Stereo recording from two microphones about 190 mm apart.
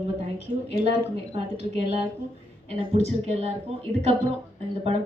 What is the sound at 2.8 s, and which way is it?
Speech, 35° right (ahead or behind).